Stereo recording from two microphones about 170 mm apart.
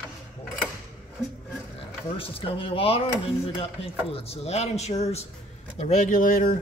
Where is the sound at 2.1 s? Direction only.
30° left (ahead or behind).